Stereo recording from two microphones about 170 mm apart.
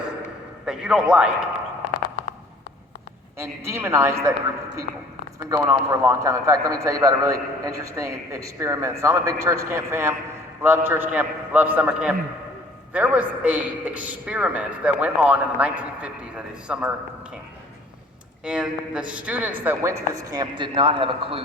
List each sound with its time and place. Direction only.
0.6 s a man's voice: 5° right (ahead or behind)
1.9 s a sound: 55° left (ahead or behind)
3.3 s a man's voice: 15° right (ahead or behind)
5.5 s a man's voice: 20° right (ahead or behind)
18.4 s a man's voice: 5° right (ahead or behind); by 21.4 s 30° right (ahead or behind)